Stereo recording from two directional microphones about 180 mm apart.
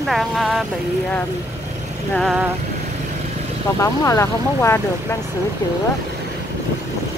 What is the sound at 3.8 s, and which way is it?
Speech, 15° left (ahead or behind).